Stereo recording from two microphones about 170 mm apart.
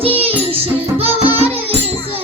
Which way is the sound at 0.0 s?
35° right (ahead or behind).